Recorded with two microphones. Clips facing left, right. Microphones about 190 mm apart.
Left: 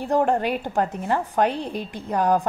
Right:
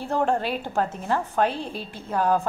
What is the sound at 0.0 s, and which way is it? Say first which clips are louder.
A woman's voice: left 3 dB; 15° left (ahead or behind).